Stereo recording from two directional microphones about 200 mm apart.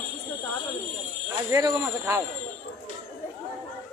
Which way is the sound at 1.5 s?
15° right (ahead or behind).